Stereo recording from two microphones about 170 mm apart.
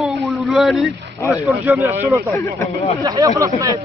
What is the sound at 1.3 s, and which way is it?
Speech, 10° right (ahead or behind).